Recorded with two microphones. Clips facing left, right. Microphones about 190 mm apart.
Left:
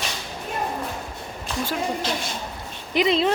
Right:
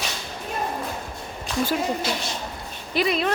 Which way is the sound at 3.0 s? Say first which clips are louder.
Left 3 dB; 25° left (ahead or behind).